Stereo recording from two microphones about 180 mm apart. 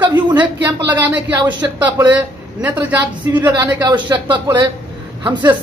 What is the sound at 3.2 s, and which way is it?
A man's voice, 20° right (ahead or behind).